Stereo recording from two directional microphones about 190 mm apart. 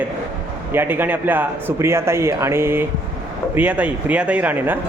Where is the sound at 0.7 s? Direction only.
10° right (ahead or behind).